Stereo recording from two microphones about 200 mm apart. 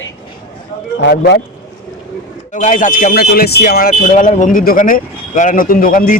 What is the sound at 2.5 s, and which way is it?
Speech, 35° left (ahead or behind).